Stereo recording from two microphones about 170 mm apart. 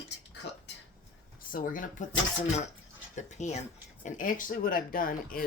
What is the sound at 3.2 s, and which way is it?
Speech, 45° left (ahead or behind).